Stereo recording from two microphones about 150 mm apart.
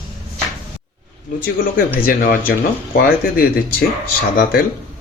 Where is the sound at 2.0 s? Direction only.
75° left (ahead or behind).